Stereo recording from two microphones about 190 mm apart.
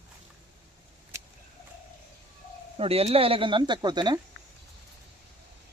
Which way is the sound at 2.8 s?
30° right (ahead or behind).